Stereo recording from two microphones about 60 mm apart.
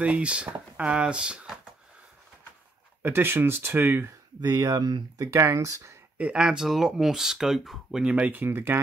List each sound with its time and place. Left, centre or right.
0.0 s speech: centre
3.0 s speech: right
4.4 s speech: right
6.1 s speech: centre
8.3 s speech: right